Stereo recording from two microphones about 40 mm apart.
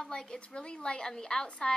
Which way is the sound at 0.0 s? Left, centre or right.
Centre.